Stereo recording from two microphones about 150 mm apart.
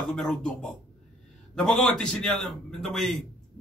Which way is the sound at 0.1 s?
5° left (ahead or behind).